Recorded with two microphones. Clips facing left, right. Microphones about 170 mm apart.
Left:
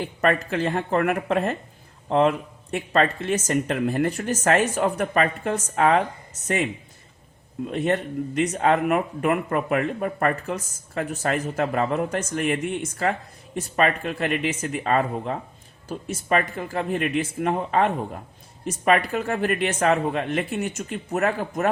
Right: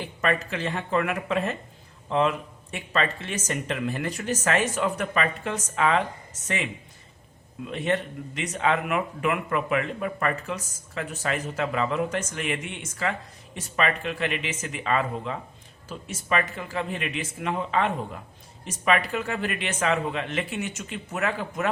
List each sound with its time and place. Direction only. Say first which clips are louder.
0.0 s speech: left 4 dB; 55° left (ahead or behind)
7.6 s speech: left 3 dB; 50° left (ahead or behind)